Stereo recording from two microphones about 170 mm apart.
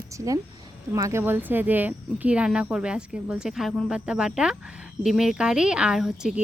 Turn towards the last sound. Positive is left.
turn(degrees=-5)  # may be behind; listen again after turning